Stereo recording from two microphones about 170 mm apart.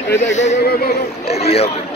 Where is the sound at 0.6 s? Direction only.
65° left (ahead or behind).